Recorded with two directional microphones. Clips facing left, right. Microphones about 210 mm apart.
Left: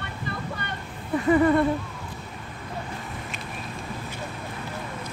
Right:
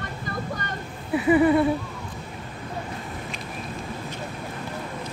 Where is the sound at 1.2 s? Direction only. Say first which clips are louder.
Right 1 dB; 10° right (ahead or behind).